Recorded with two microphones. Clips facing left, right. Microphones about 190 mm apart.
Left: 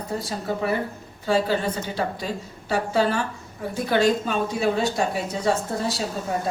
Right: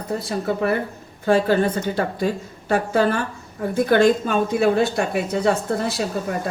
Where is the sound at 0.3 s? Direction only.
60° right (ahead or behind).